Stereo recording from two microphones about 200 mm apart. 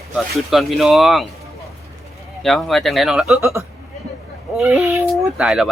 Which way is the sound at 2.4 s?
Centre (ahead or behind).